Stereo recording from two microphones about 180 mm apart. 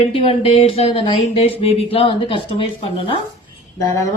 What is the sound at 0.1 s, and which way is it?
Speech, 30° left (ahead or behind).